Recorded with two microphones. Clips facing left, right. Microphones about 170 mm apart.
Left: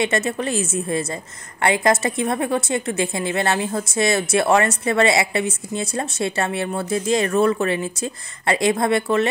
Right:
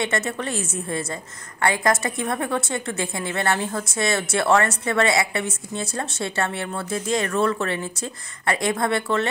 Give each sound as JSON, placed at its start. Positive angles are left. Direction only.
{"t": 0.0, "sound": "a woman's voice", "side_deg": 20}